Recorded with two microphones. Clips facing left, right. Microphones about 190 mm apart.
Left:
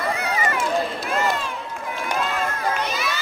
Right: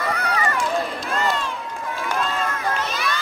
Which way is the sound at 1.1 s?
15° left (ahead or behind).